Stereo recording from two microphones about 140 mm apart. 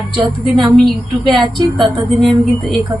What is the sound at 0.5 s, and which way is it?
A woman's voice, centre (ahead or behind).